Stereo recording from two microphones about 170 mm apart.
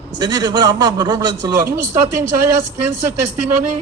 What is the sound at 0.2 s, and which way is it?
A man's voice, 25° right (ahead or behind).